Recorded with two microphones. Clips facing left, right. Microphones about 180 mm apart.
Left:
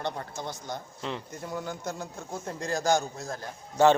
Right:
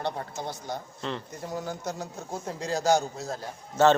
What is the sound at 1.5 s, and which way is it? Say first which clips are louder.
Speech: right 1 dB; 40° right (ahead or behind).